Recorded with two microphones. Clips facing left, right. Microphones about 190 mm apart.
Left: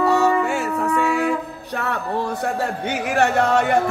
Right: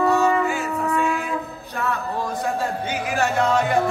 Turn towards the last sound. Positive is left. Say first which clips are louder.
# left 3 dB
turn(degrees=65)  # may be behind; listen again after turning